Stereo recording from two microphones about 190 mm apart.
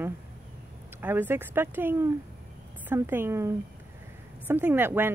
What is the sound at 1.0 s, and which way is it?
Speech, 10° right (ahead or behind).